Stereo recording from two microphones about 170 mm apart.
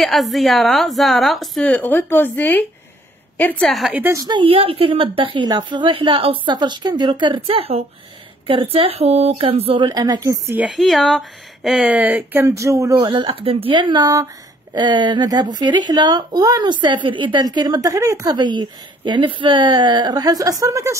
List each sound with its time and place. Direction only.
0.0 s a woman's voice: centre (ahead or behind)
4.0 s speech: 20° right (ahead or behind)